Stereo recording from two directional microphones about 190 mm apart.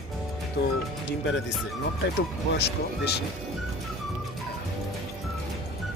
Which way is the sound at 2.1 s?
60° left (ahead or behind).